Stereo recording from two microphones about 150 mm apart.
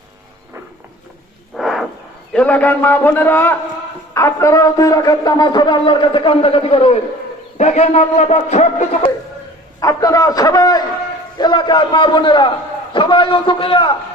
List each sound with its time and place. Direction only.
1.5 s a sound: centre (ahead or behind)
2.3 s a man's voice: 10° left (ahead or behind); by 9.0 s 50° left (ahead or behind)
9.8 s a man's voice: 25° left (ahead or behind)